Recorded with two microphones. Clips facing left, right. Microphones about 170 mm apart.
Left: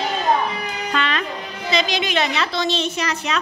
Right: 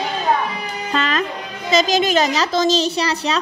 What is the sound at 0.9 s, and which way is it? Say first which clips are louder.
Music: right 2 dB; 40° right (ahead or behind).